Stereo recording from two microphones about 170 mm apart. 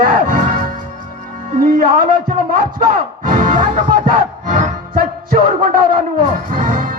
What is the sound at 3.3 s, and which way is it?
Speech, 50° right (ahead or behind).